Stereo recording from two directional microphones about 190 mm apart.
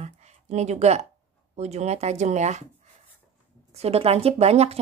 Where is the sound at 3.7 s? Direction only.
30° right (ahead or behind).